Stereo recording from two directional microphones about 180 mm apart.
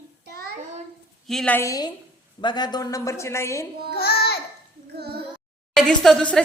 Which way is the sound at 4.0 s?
60° left (ahead or behind).